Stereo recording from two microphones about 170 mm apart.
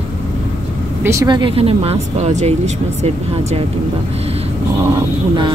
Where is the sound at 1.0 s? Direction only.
20° right (ahead or behind); by 2.5 s 40° right (ahead or behind).